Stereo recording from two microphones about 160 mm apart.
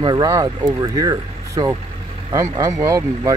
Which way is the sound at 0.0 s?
25° right (ahead or behind).